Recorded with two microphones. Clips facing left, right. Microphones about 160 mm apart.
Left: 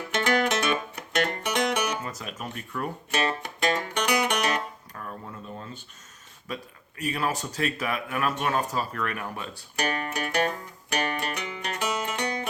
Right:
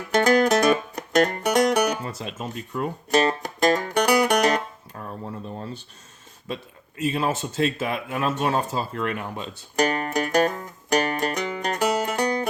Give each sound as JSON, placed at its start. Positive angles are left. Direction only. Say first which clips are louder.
{"t": 0.1, "sound": "music", "louder": "right 7 dB", "side_deg": -40}
{"t": 3.1, "sound": "music", "louder": "right 8 dB", "side_deg": -40}
{"t": 7.0, "sound": "speech", "louder": "right 4 dB", "side_deg": -25}
{"t": 9.7, "sound": "music", "louder": "right 7 dB", "side_deg": -40}